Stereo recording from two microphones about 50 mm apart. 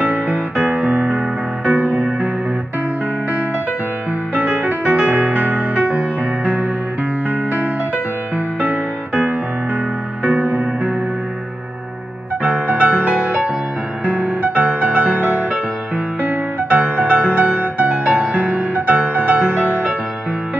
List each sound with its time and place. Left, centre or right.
0.0 s music: right
4.3 s music: right
8.5 s music: right
10.3 s music: right
12.4 s music: right
17.0 s music: right